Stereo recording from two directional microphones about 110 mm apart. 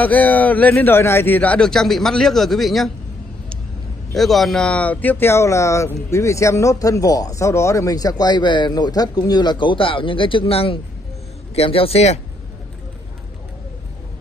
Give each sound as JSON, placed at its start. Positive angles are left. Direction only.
{"t": 0.0, "sound": "a man's voice", "side_deg": 15}
{"t": 4.1, "sound": "a man's voice", "side_deg": 0}